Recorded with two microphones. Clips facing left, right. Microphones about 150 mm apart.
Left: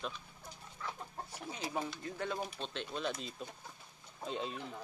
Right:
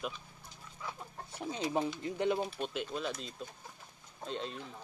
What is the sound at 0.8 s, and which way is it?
Chicken, 15° right (ahead or behind).